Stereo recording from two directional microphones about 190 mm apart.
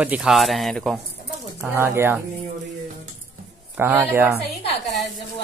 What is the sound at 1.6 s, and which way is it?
Speech, 10° right (ahead or behind).